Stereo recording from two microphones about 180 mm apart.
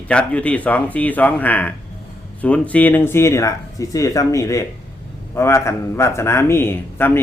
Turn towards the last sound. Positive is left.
turn(degrees=10)  # may be behind; listen again after turning